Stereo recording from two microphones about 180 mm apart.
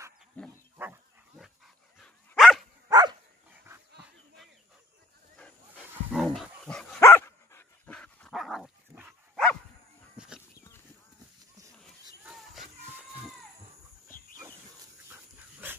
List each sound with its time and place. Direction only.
0.4 s livestock: 5° left (ahead or behind)
0.7 s dog: 10° right (ahead or behind)
2.9 s dog: 25° right (ahead or behind)
5.8 s dog: centre (ahead or behind)
7.0 s dog: 15° left (ahead or behind); by 9.4 s 5° right (ahead or behind)
10.1 s chicken: 5° right (ahead or behind)
11.8 s a sound: centre (ahead or behind)
15.0 s dog: 10° right (ahead or behind)